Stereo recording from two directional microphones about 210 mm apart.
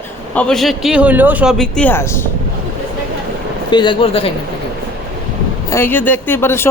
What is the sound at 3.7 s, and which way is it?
Speech, 20° left (ahead or behind).